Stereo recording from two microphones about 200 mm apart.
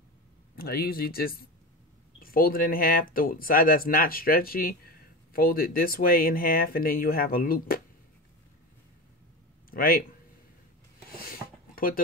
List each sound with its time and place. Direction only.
0.6 s speech: 50° left (ahead or behind)
9.7 s a man's voice: 45° left (ahead or behind)
11.1 s a sound: 45° left (ahead or behind)